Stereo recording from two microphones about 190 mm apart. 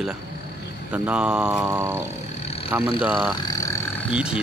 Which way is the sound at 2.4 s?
30° left (ahead or behind).